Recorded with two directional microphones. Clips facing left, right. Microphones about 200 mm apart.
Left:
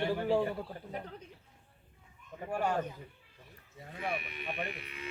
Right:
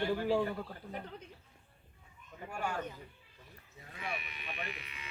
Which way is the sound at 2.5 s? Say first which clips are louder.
Left 6 dB; 35° left (ahead or behind).